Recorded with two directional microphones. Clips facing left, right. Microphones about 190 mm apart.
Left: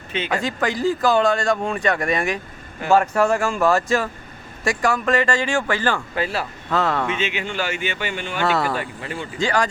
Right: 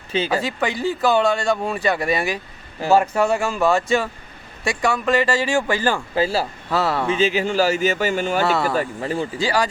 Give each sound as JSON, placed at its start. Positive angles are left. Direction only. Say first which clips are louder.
{"t": 0.1, "sound": "speech", "louder": "right 3 dB", "side_deg": -35}
{"t": 0.4, "sound": "speech", "louder": "left 1 dB", "side_deg": 0}
{"t": 6.1, "sound": "speech", "louder": "right 4 dB", "side_deg": -30}
{"t": 6.7, "sound": "speech", "louder": "left 2 dB", "side_deg": -10}
{"t": 7.1, "sound": "speech", "louder": "right 6 dB", "side_deg": -35}
{"t": 8.4, "sound": "speech", "louder": "right 1 dB", "side_deg": 0}
{"t": 8.7, "sound": "speech", "louder": "right 5 dB", "side_deg": -35}
{"t": 9.4, "sound": "speech", "louder": "left 1 dB", "side_deg": -5}